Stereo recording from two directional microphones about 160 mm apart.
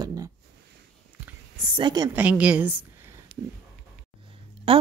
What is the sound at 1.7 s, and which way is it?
Speech, 30° right (ahead or behind).